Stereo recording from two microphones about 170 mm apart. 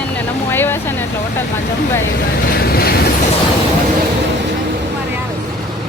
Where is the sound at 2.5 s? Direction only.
65° left (ahead or behind).